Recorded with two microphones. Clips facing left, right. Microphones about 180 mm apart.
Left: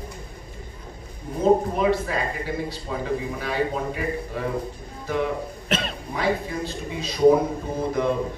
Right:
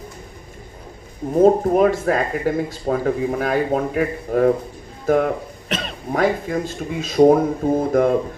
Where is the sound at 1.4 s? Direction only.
50° right (ahead or behind).